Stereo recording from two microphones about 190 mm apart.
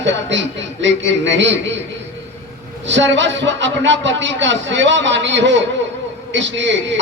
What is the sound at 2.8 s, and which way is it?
A man's voice, 75° right (ahead or behind).